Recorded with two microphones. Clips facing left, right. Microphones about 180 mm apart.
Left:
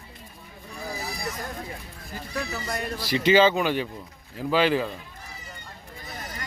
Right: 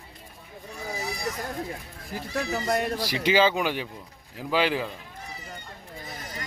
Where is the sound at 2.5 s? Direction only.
65° right (ahead or behind).